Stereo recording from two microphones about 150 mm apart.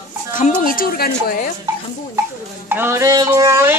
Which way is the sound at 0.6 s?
75° left (ahead or behind).